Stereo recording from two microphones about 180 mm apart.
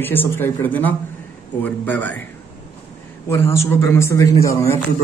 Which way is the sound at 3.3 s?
15° left (ahead or behind).